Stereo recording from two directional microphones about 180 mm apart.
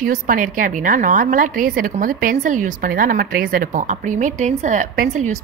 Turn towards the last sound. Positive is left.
turn(degrees=-45)  # may be behind; listen again after turning